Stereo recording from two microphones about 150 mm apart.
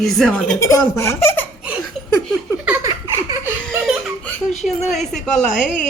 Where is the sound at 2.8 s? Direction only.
20° right (ahead or behind).